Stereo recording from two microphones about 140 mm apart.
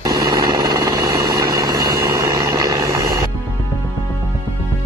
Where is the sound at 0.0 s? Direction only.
25° right (ahead or behind).